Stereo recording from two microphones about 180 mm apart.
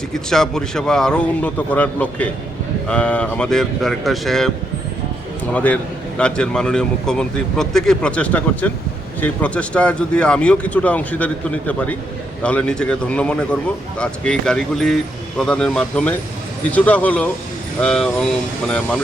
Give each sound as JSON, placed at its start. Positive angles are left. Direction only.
{"t": 0.1, "sound": "a man's voice", "side_deg": 5}
{"t": 5.5, "sound": "a man's voice", "side_deg": 5}